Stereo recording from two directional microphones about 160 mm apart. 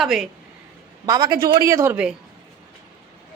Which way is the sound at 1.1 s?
25° right (ahead or behind).